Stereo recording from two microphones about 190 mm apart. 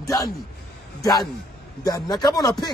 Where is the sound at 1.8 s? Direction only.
20° left (ahead or behind).